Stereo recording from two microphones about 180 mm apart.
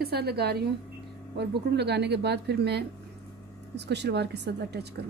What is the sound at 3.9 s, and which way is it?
A woman's voice, 70° right (ahead or behind).